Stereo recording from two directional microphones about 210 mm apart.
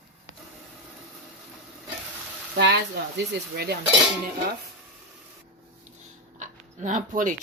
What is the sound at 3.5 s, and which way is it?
Cutlery, 50° right (ahead or behind).